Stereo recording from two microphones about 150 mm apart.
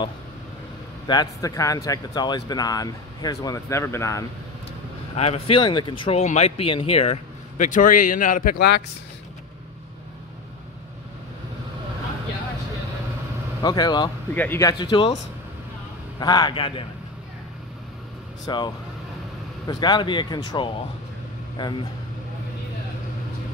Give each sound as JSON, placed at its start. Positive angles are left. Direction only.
{"t": 1.0, "sound": "speech", "side_deg": 25}
{"t": 5.1, "sound": "speech", "side_deg": 45}
{"t": 5.6, "sound": "speech", "side_deg": 30}
{"t": 6.2, "sound": "speech", "side_deg": 50}
{"t": 7.5, "sound": "a man's voice", "side_deg": 60}
{"t": 13.6, "sound": "speech", "side_deg": 30}
{"t": 14.3, "sound": "speech", "side_deg": 10}
{"t": 14.6, "sound": "speech", "side_deg": 25}
{"t": 16.2, "sound": "speech", "side_deg": 30}
{"t": 18.4, "sound": "speech", "side_deg": 30}
{"t": 19.7, "sound": "speech", "side_deg": 30}